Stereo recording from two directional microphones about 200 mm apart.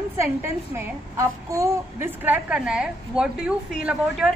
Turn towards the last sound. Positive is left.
turn(degrees=-5)  # may be behind; listen again after turning